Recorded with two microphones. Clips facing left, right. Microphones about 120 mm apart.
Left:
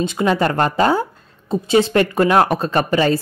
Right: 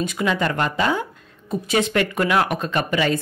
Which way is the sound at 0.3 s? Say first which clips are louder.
Left 6 dB; 40° left (ahead or behind).